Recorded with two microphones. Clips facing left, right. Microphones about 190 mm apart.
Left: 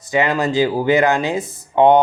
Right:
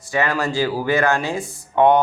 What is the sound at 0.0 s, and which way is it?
Speech, 20° left (ahead or behind).